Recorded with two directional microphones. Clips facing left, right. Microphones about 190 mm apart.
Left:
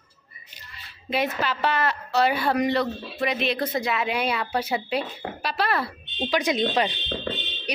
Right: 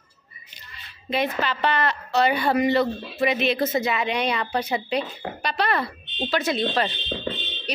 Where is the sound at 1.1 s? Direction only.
10° left (ahead or behind).